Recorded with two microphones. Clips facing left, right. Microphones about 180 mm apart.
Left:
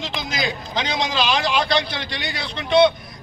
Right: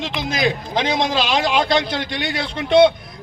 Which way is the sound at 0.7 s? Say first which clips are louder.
Right 4 dB; 50° right (ahead or behind).